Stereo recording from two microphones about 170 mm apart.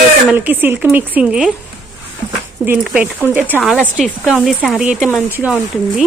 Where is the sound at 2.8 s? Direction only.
10° right (ahead or behind).